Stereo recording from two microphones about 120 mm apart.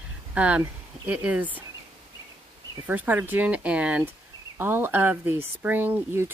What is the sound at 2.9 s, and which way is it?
Speech, 15° right (ahead or behind).